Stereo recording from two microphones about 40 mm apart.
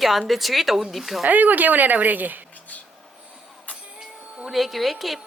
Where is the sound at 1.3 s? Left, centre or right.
Right.